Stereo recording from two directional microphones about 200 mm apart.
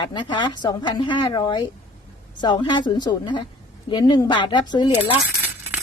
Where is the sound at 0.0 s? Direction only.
20° left (ahead or behind).